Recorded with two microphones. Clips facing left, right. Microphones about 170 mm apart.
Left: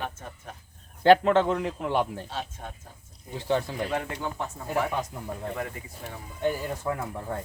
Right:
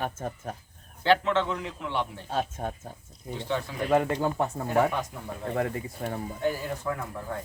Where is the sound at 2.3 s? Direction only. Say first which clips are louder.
Right 6 dB; 50° right (ahead or behind).